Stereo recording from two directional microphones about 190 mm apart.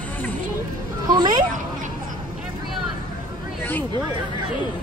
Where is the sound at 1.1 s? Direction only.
25° right (ahead or behind).